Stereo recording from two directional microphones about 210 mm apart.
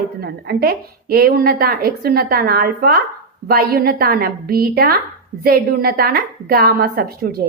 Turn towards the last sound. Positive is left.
turn(degrees=-45)  # may be behind; listen again after turning